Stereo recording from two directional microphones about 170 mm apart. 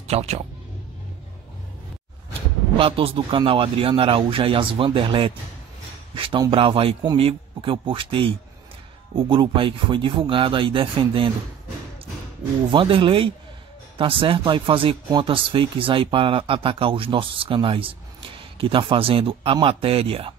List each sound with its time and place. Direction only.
0.0 s speech: 40° right (ahead or behind)
2.8 s speech: 30° right (ahead or behind)
12.7 s speech: 30° right (ahead or behind)